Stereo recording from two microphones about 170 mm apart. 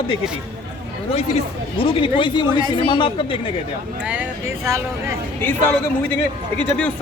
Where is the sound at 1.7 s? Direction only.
30° left (ahead or behind).